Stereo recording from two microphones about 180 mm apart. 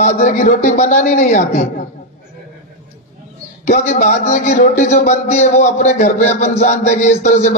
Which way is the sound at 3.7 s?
40° left (ahead or behind).